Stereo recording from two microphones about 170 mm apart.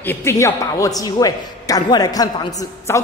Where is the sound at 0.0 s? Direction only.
15° left (ahead or behind).